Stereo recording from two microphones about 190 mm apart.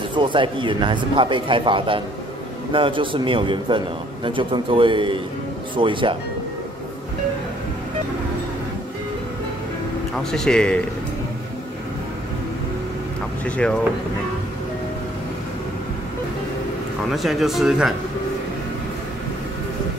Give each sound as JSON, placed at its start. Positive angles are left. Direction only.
{"t": 0.1, "sound": "a man's voice", "side_deg": -25}
{"t": 10.1, "sound": "speech", "side_deg": 5}
{"t": 13.6, "sound": "speech", "side_deg": 5}
{"t": 17.1, "sound": "speech", "side_deg": 0}